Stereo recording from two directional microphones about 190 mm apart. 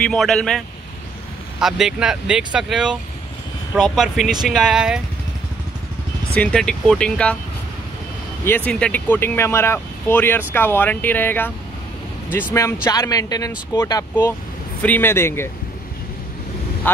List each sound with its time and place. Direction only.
0.0 s speech: centre (ahead or behind)
6.3 s speech: 5° left (ahead or behind)
8.5 s speech: 10° left (ahead or behind)
12.8 s speech: 15° left (ahead or behind)
16.8 s speech: 10° left (ahead or behind)